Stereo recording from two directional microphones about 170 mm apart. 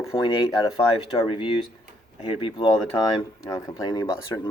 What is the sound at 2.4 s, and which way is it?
Speech, 30° left (ahead or behind).